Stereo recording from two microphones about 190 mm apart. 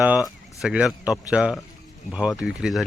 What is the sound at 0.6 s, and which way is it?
Speech, 5° right (ahead or behind).